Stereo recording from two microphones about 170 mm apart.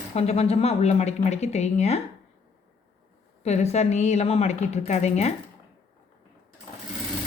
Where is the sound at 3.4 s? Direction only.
40° left (ahead or behind).